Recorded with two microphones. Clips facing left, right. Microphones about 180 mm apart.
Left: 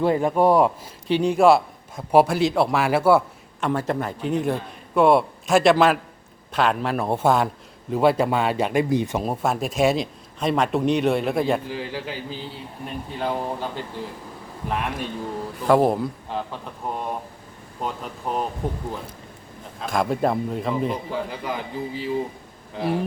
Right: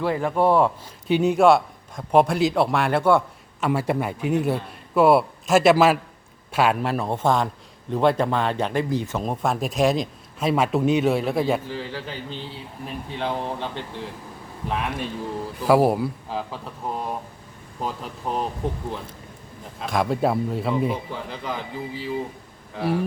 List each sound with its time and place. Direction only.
0.0 s a man's voice: 20° left (ahead or behind)
1.0 s a man's voice: 5° right (ahead or behind)
3.7 s a man's voice: 10° right (ahead or behind); by 9.2 s 20° left (ahead or behind)
9.2 s a man's voice: 5° left (ahead or behind)
11.7 s a man's voice: 10° left (ahead or behind)
19.8 s a man's voice: centre (ahead or behind)
21.2 s a man's voice: 10° left (ahead or behind)